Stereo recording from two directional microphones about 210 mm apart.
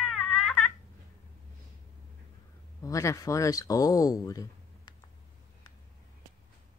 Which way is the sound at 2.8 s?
15° left (ahead or behind).